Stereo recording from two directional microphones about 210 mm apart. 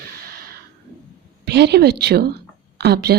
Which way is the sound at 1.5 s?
50° right (ahead or behind).